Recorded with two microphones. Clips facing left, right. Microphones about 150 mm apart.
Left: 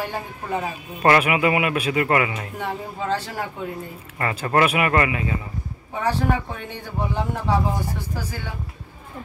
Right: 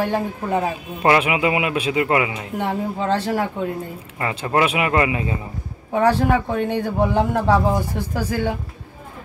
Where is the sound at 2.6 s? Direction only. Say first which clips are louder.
Right 6 dB; 65° right (ahead or behind).